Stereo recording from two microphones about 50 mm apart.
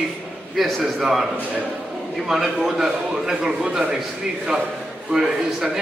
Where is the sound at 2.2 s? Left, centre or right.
Centre.